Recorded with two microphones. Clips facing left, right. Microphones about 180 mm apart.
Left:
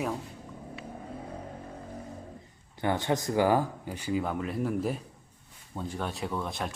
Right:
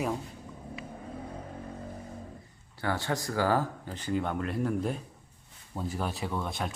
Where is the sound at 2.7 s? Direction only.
20° left (ahead or behind).